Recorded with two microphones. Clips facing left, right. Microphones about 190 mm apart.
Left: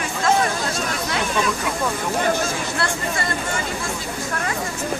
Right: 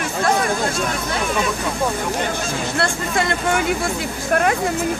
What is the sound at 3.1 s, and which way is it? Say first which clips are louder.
Speech: right 6 dB; 60° right (ahead or behind).